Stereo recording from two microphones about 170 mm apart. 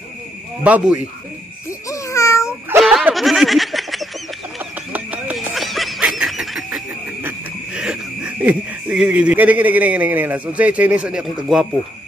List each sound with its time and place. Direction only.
0.7 s speech: 5° right (ahead or behind)
1.9 s babbling: 15° left (ahead or behind)
2.8 s a sound: centre (ahead or behind)
7.2 s owl: 5° right (ahead or behind)